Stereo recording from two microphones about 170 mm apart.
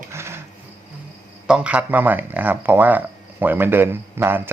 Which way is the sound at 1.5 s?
5° right (ahead or behind).